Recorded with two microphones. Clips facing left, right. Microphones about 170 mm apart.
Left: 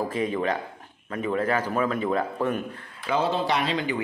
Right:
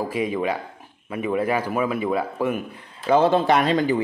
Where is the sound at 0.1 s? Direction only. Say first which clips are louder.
Right 2 dB; 10° right (ahead or behind).